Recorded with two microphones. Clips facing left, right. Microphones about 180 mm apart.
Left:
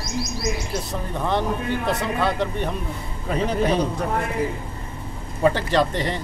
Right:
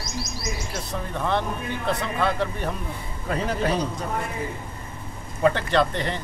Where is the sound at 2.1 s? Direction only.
Centre (ahead or behind).